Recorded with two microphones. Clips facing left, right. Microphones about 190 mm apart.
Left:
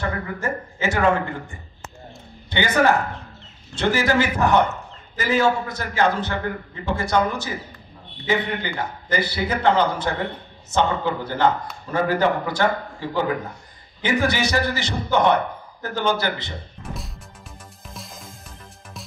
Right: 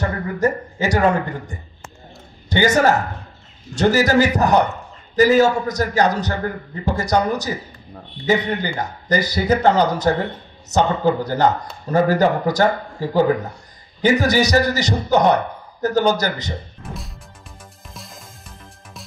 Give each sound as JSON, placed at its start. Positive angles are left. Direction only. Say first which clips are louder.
{"t": 0.4, "sound": "a man's voice", "louder": "right 7 dB", "side_deg": -40}
{"t": 2.5, "sound": "a man's voice", "louder": "right 3 dB", "side_deg": -40}
{"t": 17.8, "sound": "music", "louder": "left 1 dB", "side_deg": 0}